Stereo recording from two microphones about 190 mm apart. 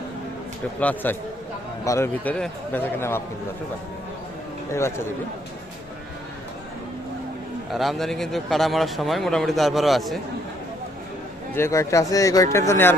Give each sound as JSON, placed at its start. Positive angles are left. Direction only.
{"t": 0.8, "sound": "speech", "side_deg": 10}
{"t": 4.7, "sound": "speech", "side_deg": 15}
{"t": 7.7, "sound": "a man's voice", "side_deg": 0}
{"t": 11.5, "sound": "speech", "side_deg": 15}